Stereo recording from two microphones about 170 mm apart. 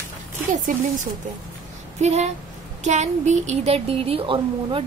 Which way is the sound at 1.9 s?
40° right (ahead or behind).